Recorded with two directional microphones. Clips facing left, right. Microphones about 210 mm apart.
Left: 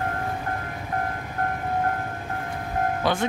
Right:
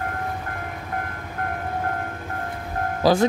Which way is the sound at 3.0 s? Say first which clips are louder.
Right 9 dB; 35° right (ahead or behind).